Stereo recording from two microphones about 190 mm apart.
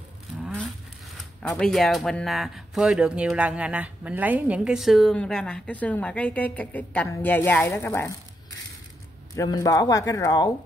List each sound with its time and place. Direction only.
0.4 s a sound: 5° left (ahead or behind)
1.4 s speech: 5° left (ahead or behind)
9.3 s speech: 20° left (ahead or behind)